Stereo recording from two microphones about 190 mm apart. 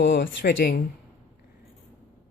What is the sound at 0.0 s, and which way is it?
Speech, 65° left (ahead or behind).